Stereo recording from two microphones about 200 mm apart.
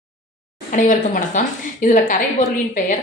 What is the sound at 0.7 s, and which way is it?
A woman's voice, 40° left (ahead or behind).